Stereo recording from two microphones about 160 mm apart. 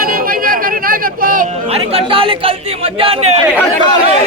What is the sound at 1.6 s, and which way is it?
Speech, 40° right (ahead or behind).